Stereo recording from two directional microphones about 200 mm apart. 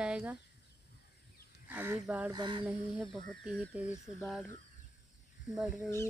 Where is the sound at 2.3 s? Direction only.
20° right (ahead or behind).